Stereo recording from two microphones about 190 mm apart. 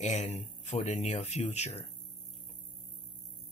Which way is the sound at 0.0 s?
35° left (ahead or behind).